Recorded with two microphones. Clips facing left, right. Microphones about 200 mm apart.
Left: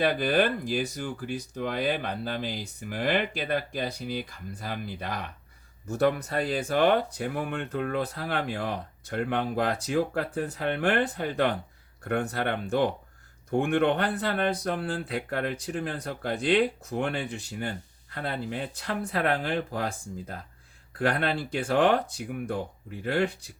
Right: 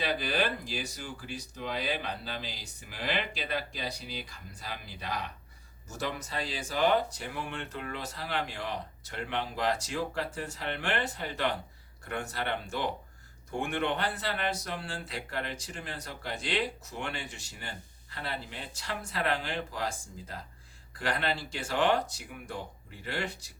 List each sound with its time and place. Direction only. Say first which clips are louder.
0.0 s speech: left 7 dB; 50° left (ahead or behind)